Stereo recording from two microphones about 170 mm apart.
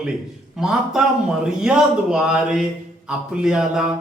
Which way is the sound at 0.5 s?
5° right (ahead or behind).